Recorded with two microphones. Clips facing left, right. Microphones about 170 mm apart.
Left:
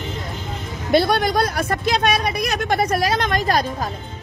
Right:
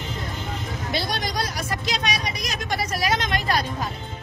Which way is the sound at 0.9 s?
55° left (ahead or behind).